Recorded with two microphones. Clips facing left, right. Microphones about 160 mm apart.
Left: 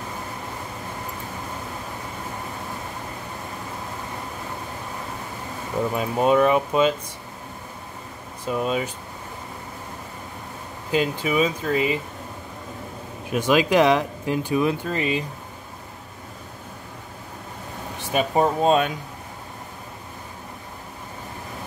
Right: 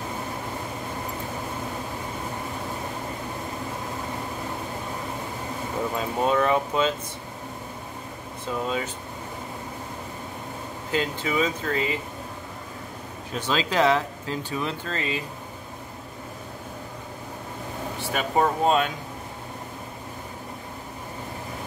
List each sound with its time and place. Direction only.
5.9 s speech: 15° left (ahead or behind)
8.5 s speech: 20° left (ahead or behind)
10.9 s speech: 15° left (ahead or behind)
13.3 s speech: 15° left (ahead or behind)
18.0 s speech: 20° left (ahead or behind)